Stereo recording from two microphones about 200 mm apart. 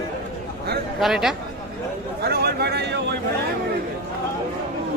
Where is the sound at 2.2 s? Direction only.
55° right (ahead or behind).